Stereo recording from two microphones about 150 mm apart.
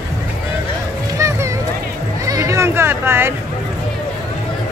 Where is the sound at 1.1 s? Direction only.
20° right (ahead or behind).